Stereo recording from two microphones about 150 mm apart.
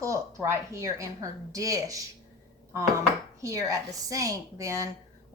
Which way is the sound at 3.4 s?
20° right (ahead or behind).